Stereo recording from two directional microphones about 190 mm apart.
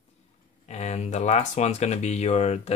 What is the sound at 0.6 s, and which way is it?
Speech, 35° left (ahead or behind).